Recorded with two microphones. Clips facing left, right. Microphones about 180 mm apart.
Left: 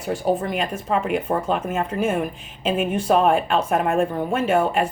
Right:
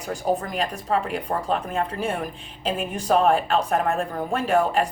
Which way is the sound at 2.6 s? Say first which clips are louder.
Left 5 dB; 35° right (ahead or behind).